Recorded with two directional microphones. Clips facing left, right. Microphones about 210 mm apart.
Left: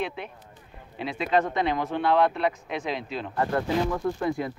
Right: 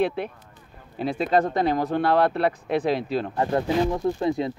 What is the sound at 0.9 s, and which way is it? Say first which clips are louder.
Speech: right 3 dB; 40° right (ahead or behind).